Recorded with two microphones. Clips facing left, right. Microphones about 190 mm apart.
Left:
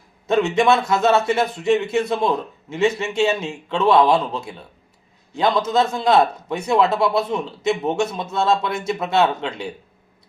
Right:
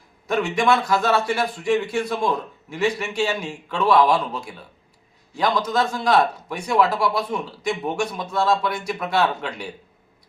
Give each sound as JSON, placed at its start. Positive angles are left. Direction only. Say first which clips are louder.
{"t": 0.3, "sound": "a man's voice", "louder": "left 3 dB", "side_deg": 25}